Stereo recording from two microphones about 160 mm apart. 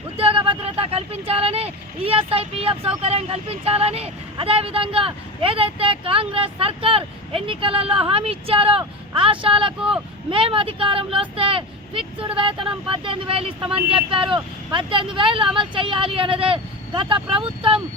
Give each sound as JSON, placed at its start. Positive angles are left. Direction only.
{"t": 0.2, "sound": "speech", "side_deg": -35}